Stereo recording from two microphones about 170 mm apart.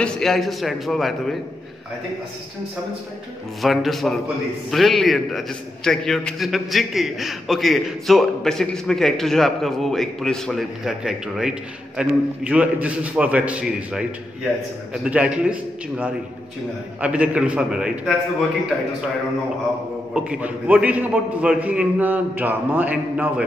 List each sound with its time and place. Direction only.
0.0 s a man's voice: centre (ahead or behind)
3.6 s a man's voice: centre (ahead or behind)
15.0 s a man's voice: 5° right (ahead or behind)
20.2 s a man's voice: 5° right (ahead or behind)